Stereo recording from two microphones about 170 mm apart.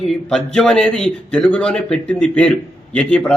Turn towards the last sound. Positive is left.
turn(degrees=5)  # may be behind; listen again after turning